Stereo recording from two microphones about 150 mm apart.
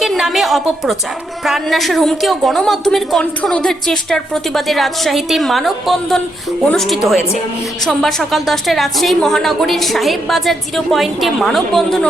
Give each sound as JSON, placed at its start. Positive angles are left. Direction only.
{"t": 0.0, "sound": "a woman's voice", "side_deg": 0}